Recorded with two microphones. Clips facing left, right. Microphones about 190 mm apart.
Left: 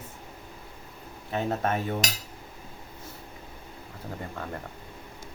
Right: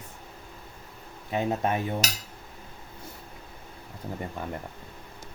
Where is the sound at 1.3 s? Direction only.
15° right (ahead or behind).